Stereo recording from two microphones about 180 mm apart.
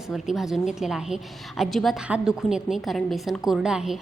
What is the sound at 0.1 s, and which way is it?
A woman's voice, centre (ahead or behind).